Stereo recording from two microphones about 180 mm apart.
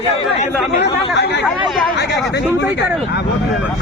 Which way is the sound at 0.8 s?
70° left (ahead or behind).